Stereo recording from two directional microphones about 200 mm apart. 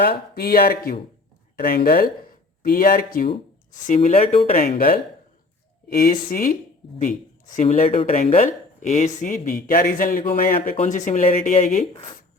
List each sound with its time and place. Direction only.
0.0 s speech: 50° left (ahead or behind); by 12.0 s 35° left (ahead or behind)